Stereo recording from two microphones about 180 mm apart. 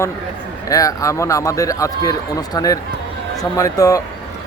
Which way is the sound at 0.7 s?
20° left (ahead or behind).